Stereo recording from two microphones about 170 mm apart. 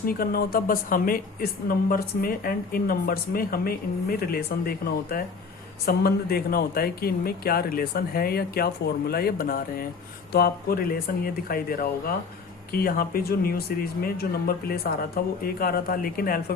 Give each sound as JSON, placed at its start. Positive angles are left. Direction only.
{"t": 0.0, "sound": "a woman's voice", "side_deg": 60}